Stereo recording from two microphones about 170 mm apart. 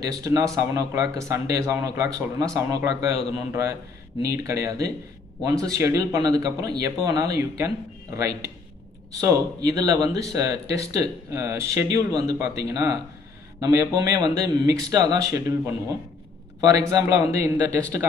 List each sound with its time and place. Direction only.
0.0 s speech: 20° right (ahead or behind)
4.2 s a man's voice: 20° right (ahead or behind)